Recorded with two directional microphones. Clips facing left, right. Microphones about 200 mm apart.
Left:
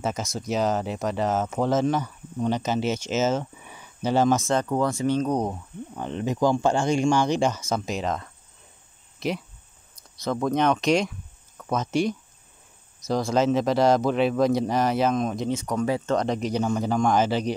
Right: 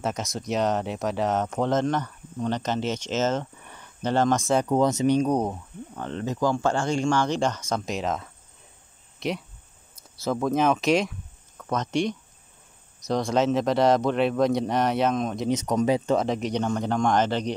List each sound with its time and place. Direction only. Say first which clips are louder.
0.0 s speech: left 1 dB; centre (ahead or behind)
4.6 s speech: right 2 dB; 20° right (ahead or behind)
5.9 s speech: left 2 dB; 15° left (ahead or behind)
15.5 s speech: right 6 dB; 20° right (ahead or behind)
16.2 s speech: left 1 dB; centre (ahead or behind)